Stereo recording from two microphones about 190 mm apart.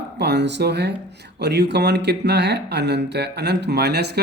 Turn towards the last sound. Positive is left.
turn(degrees=-60)  # may be behind; listen again after turning